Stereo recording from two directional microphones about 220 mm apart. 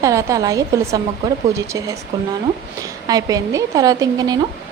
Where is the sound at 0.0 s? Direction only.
15° right (ahead or behind).